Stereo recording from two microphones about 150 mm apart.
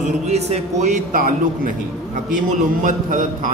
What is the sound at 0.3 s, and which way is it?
A man's voice, 50° right (ahead or behind).